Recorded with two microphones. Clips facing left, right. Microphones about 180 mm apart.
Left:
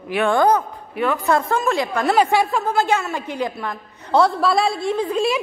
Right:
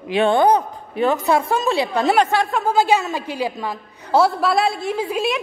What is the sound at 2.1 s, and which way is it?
Speech, 10° left (ahead or behind).